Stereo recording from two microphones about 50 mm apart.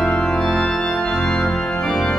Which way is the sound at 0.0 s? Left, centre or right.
Centre.